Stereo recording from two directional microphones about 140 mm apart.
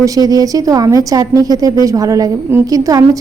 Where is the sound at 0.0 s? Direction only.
25° right (ahead or behind).